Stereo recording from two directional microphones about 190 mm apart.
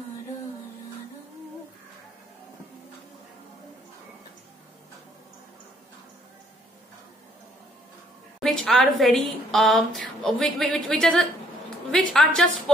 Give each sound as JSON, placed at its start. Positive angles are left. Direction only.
{"t": 8.4, "sound": "a woman's voice", "side_deg": 0}